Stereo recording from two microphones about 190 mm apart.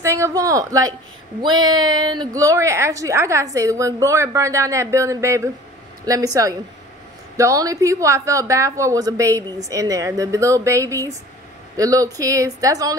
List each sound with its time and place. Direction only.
0.0 s a woman's voice: 15° right (ahead or behind)